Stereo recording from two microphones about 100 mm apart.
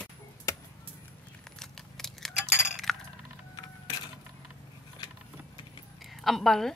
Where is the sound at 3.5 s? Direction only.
50° left (ahead or behind).